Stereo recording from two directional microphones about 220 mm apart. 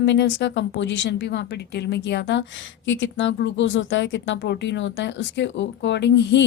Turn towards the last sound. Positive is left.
turn(degrees=55)  # may be behind; listen again after turning